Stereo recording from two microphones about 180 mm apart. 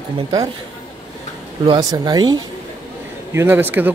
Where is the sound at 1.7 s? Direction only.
20° right (ahead or behind).